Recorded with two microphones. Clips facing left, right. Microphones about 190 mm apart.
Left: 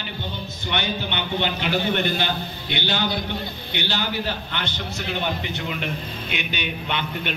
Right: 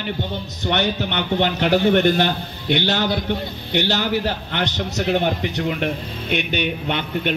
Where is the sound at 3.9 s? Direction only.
80° right.